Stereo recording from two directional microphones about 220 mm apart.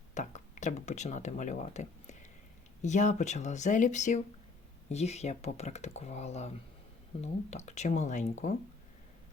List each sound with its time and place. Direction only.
0.1 s speech: 35° left (ahead or behind)
7.5 s speech: 30° left (ahead or behind)